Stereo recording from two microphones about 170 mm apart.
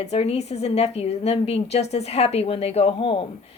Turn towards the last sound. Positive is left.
turn(degrees=30)  # may be behind; listen again after turning